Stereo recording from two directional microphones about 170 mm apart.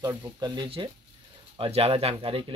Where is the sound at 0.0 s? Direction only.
20° right (ahead or behind).